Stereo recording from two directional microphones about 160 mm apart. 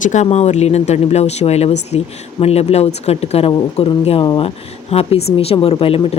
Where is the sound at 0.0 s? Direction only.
45° left (ahead or behind).